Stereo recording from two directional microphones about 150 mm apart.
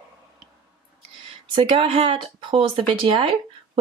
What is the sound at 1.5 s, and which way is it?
Speech, 35° right (ahead or behind).